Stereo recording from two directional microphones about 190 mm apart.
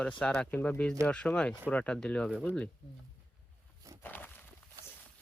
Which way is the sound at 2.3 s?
5° right (ahead or behind).